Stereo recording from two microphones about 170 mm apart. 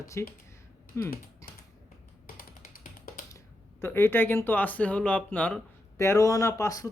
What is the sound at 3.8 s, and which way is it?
A man's voice, 15° left (ahead or behind).